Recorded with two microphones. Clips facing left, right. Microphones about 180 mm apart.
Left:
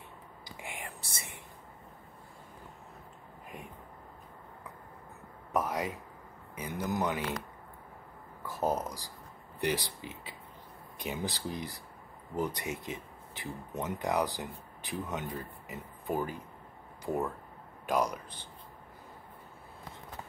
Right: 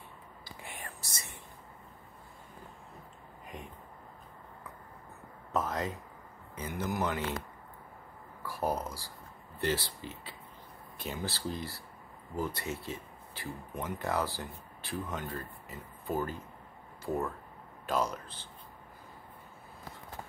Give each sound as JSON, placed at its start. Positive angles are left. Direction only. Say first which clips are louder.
{"t": 0.6, "sound": "whispering", "louder": "left 3 dB", "side_deg": 15}
{"t": 5.5, "sound": "a sound", "louder": "left 1 dB", "side_deg": 10}
{"t": 6.7, "sound": "speech", "louder": "left 1 dB", "side_deg": 20}
{"t": 8.5, "sound": "speech", "louder": "left 2 dB", "side_deg": 20}
{"t": 17.8, "sound": "speech", "louder": "left 2 dB", "side_deg": 15}